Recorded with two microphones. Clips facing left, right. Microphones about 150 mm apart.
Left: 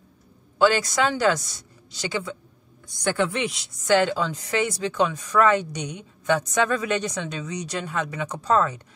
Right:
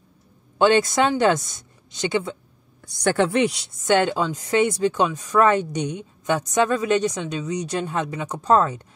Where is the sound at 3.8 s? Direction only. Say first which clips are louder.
Right 1 dB; 20° right (ahead or behind).